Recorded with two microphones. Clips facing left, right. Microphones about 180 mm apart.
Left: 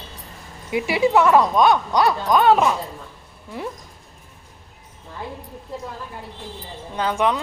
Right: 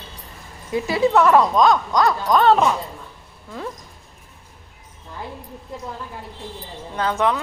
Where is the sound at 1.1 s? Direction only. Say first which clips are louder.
Right 1 dB; 5° left (ahead or behind).